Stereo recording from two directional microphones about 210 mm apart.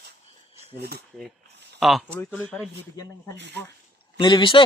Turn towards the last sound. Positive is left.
turn(degrees=25)  # may be behind; listen again after turning